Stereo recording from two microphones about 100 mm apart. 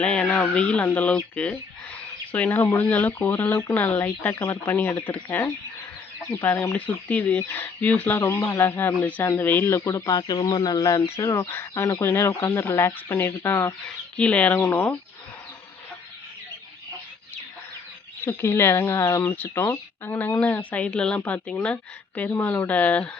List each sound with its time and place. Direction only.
0.0 s speech: 10° left (ahead or behind)
8.4 s speech: 35° left (ahead or behind)
8.6 s speech: 20° left (ahead or behind)
13.8 s speech: 10° left (ahead or behind)
18.3 s speech: 25° left (ahead or behind)